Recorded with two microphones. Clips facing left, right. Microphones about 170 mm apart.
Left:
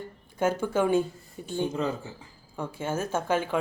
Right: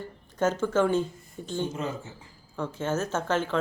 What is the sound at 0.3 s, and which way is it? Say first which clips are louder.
A woman's voice: right 1 dB; 10° left (ahead or behind).